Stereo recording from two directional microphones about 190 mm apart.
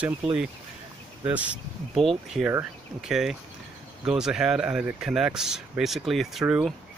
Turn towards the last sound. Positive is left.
turn(degrees=-5)  # may be behind; listen again after turning